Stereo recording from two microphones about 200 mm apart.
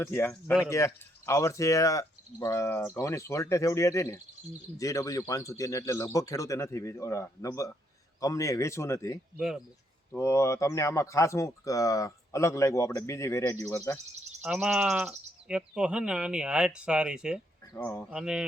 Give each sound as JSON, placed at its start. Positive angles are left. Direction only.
{"t": 0.0, "sound": "speech", "side_deg": 10}
{"t": 14.4, "sound": "speech", "side_deg": -5}